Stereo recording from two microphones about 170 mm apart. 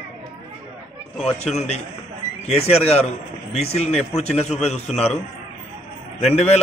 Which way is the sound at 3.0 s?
35° left (ahead or behind).